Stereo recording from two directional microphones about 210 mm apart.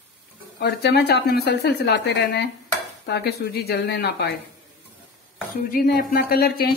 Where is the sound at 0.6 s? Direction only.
50° left (ahead or behind).